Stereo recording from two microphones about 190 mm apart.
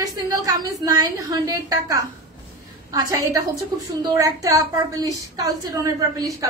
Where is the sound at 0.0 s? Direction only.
20° right (ahead or behind).